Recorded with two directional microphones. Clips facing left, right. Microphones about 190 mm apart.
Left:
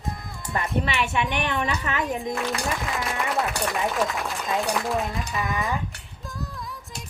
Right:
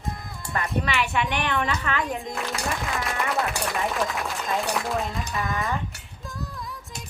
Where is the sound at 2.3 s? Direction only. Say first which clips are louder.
Left 2 dB; centre (ahead or behind).